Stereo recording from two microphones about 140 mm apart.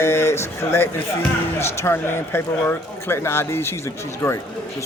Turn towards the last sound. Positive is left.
turn(degrees=15)  # may be behind; listen again after turning